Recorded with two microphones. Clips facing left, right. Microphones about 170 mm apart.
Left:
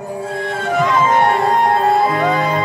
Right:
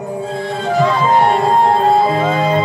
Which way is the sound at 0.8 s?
30° right (ahead or behind).